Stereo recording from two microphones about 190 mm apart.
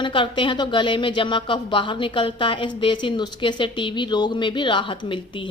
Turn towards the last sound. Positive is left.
turn(degrees=25)  # may be behind; listen again after turning